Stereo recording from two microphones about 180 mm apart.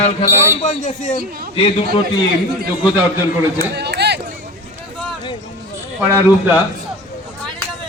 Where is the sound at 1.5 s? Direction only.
30° left (ahead or behind).